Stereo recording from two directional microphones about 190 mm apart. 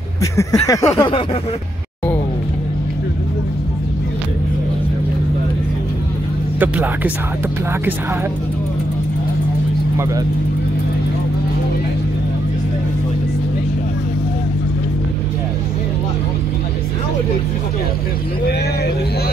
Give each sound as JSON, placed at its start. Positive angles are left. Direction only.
{"t": 0.2, "sound": "speech", "side_deg": 15}
{"t": 6.6, "sound": "speech", "side_deg": -10}